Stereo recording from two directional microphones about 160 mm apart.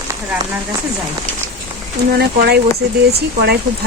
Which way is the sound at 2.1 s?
85° right.